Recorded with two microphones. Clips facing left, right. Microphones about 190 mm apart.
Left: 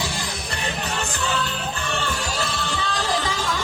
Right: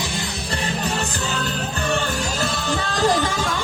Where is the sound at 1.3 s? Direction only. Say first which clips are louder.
Right 1 dB; 40° right (ahead or behind).